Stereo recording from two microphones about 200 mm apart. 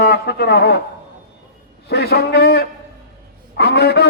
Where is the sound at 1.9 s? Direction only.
55° left (ahead or behind).